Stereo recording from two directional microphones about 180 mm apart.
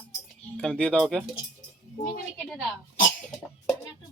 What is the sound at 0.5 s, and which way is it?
Speech, 5° left (ahead or behind).